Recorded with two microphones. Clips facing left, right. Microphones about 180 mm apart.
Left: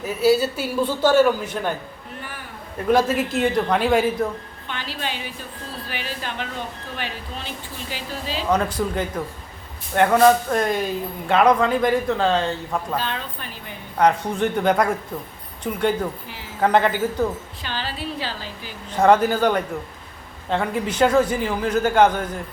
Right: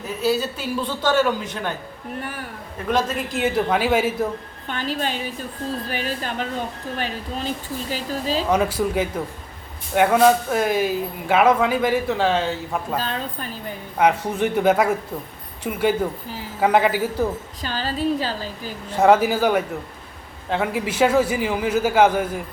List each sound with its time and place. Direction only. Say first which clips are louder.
0.0 s a man's voice: left 4 dB; 10° left (ahead or behind)
2.9 s speech: left 4 dB; 5° left (ahead or behind)
4.7 s a woman's voice: right 5 dB; 45° right (ahead or behind)
8.4 s a man's voice: left 1 dB; 10° right (ahead or behind)
13.0 s speech: right 2 dB; 40° right (ahead or behind)
14.0 s a man's voice: even; 10° right (ahead or behind)
17.6 s speech: right 7 dB; 40° right (ahead or behind)
18.9 s a man's voice: even; 5° right (ahead or behind)